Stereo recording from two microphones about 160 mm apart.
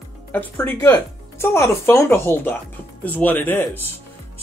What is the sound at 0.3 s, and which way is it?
Speech, 10° left (ahead or behind).